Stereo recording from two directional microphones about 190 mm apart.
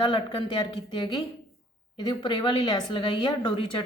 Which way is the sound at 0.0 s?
25° left (ahead or behind).